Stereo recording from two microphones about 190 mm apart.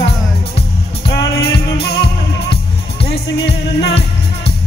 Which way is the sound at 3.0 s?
30° left (ahead or behind).